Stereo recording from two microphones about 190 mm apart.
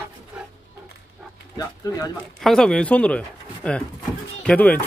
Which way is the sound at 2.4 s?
5° left (ahead or behind).